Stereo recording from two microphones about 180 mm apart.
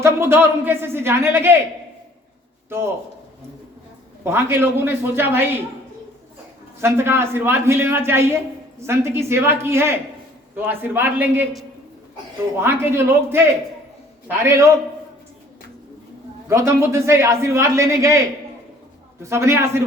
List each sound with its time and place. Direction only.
0.0 s speech: 15° right (ahead or behind)
2.6 s a man's voice: 15° right (ahead or behind)
4.2 s speech: 15° right (ahead or behind)
6.8 s speech: 15° right (ahead or behind)
12.5 s speech: 15° right (ahead or behind)
16.5 s speech: 15° right (ahead or behind)